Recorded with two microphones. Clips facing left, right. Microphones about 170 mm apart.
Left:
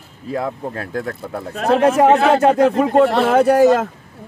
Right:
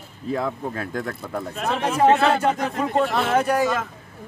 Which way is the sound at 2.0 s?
80° left.